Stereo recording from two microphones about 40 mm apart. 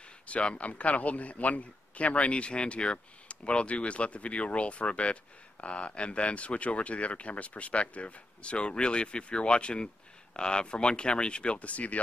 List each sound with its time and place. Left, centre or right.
0.3 s speech: left